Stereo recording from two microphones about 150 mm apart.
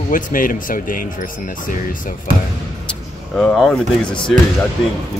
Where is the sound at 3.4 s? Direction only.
5° left (ahead or behind).